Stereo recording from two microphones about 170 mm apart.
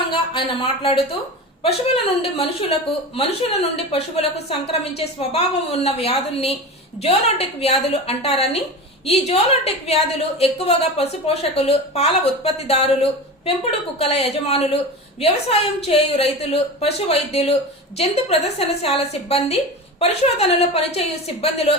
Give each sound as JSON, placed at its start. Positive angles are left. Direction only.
{"t": 0.1, "sound": "speech", "side_deg": 30}